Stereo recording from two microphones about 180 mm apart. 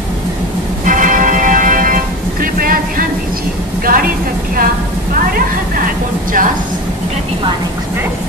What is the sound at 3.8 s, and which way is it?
Speech, 55° right (ahead or behind).